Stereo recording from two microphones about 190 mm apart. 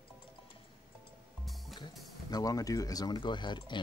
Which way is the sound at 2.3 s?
20° left (ahead or behind).